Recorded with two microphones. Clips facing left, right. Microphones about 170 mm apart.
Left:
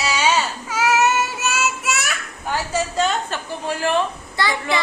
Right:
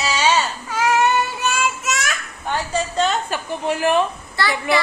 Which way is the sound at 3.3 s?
15° right (ahead or behind).